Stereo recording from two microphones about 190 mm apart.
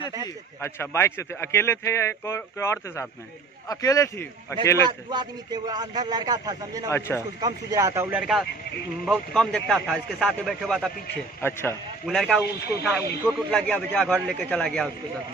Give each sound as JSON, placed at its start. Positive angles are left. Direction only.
{"t": 0.2, "sound": "a man's voice", "side_deg": 15}
{"t": 4.8, "sound": "a man's voice", "side_deg": -20}
{"t": 6.9, "sound": "a man's voice", "side_deg": 15}
{"t": 7.3, "sound": "a man's voice", "side_deg": -20}